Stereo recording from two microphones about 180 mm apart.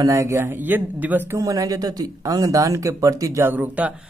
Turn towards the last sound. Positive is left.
turn(degrees=-5)  # may be behind; listen again after turning